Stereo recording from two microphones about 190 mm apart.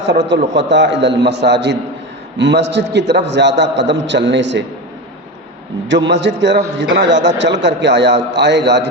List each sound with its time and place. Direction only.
0.3 s a man's voice: 65° right (ahead or behind)
6.1 s a man's voice: 65° right (ahead or behind)